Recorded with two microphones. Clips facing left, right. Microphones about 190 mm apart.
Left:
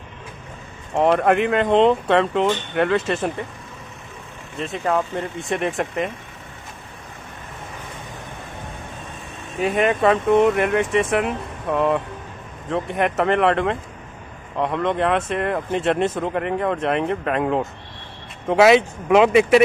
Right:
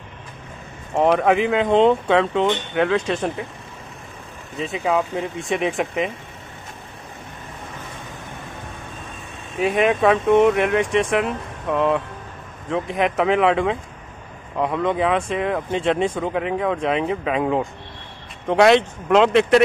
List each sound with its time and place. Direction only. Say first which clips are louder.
0.9 s speech: even; centre (ahead or behind)
4.6 s speech: right 1 dB; 5° right (ahead or behind)
9.6 s speech: right 1 dB; centre (ahead or behind)